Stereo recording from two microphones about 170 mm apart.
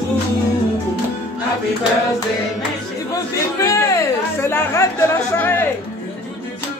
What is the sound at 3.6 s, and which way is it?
Music, 15° left (ahead or behind).